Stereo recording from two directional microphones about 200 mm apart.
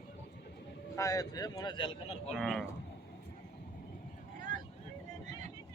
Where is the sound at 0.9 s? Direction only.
15° left (ahead or behind).